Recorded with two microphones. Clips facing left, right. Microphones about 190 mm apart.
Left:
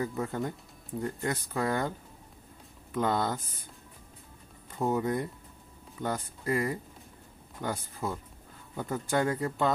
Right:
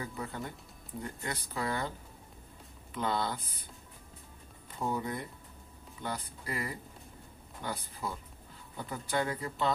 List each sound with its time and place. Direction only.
0.0 s speech: 45° left (ahead or behind)
4.8 s speech: 45° left (ahead or behind)